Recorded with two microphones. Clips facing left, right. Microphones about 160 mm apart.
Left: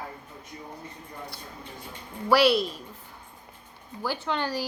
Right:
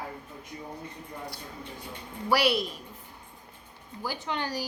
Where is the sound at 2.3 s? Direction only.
15° right (ahead or behind).